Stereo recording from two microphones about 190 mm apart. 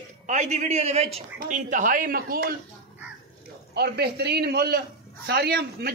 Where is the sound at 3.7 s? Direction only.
55° right (ahead or behind).